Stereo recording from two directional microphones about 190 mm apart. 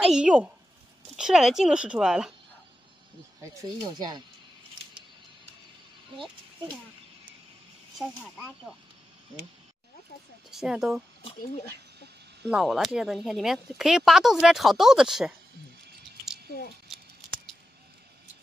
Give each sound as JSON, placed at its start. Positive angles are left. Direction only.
{"t": 0.0, "sound": "a woman's voice", "side_deg": -5}
{"t": 3.6, "sound": "speech", "side_deg": -20}
{"t": 8.0, "sound": "speech", "side_deg": -5}
{"t": 10.5, "sound": "speech", "side_deg": -5}
{"t": 12.4, "sound": "speech", "side_deg": 0}
{"t": 16.4, "sound": "a child's voice", "side_deg": 55}